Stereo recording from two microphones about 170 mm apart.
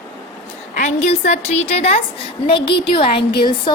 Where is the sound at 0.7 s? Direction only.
45° left (ahead or behind).